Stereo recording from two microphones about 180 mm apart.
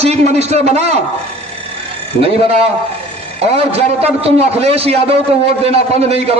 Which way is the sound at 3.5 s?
35° right (ahead or behind).